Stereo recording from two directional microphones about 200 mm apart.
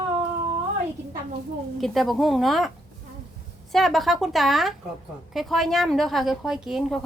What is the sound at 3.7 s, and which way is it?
A woman's voice, centre (ahead or behind).